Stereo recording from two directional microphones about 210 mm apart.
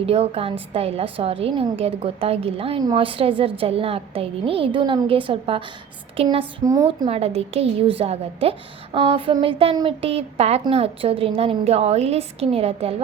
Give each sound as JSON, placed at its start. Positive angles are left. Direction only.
{"t": 0.0, "sound": "a woman's voice", "side_deg": -30}